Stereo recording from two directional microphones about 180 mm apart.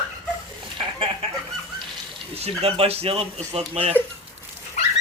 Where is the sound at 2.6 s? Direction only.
35° right (ahead or behind).